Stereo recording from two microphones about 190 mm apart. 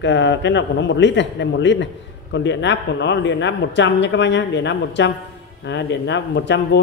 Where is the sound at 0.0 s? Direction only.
70° left (ahead or behind).